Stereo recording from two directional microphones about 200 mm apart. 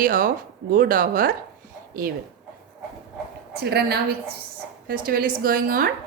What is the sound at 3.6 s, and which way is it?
A woman's voice, 55° right (ahead or behind).